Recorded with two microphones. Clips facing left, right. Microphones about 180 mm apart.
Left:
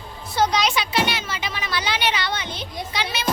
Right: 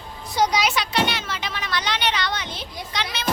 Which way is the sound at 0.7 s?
5° left (ahead or behind).